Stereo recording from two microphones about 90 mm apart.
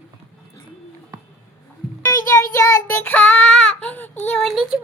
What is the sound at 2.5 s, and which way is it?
Child singing, 35° left (ahead or behind).